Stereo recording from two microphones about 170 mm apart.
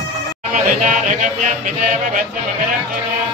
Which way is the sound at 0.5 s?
50° right (ahead or behind).